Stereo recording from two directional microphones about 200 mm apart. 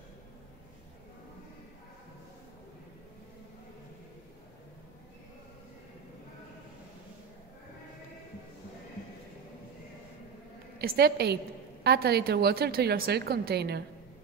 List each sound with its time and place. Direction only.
10.8 s a woman's voice: 50° right (ahead or behind)